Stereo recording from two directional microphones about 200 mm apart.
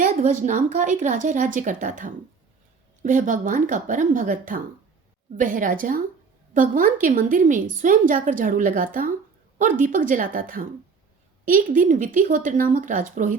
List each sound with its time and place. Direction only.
0.0 s a woman's voice: 40° right (ahead or behind)